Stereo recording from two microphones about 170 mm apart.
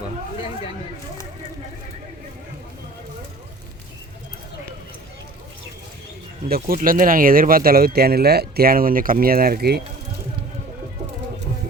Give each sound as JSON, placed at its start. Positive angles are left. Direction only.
{"t": 6.5, "sound": "speech", "side_deg": -55}